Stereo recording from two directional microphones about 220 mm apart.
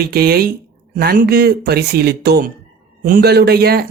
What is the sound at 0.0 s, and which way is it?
Speech, 45° right (ahead or behind).